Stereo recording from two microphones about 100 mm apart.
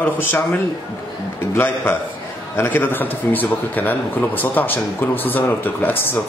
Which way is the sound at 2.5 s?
20° left (ahead or behind).